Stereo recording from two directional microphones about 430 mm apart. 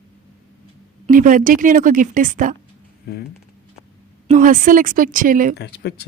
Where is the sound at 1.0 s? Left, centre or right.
Centre.